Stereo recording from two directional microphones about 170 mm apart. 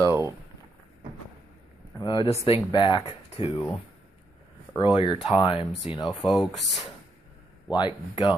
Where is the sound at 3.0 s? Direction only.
35° left (ahead or behind).